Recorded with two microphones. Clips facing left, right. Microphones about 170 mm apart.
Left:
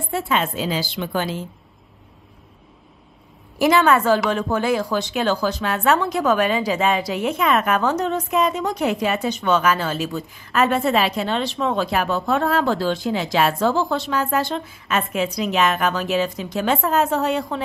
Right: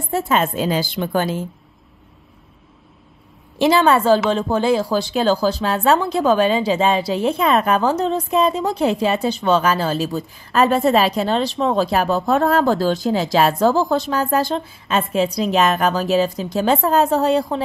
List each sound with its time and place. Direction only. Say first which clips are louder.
0.1 s a woman's voice: right 4 dB; 40° right (ahead or behind)
3.5 s a woman's voice: right 2 dB; 30° right (ahead or behind)